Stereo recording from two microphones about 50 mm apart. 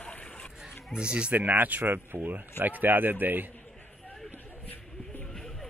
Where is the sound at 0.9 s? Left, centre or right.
Centre.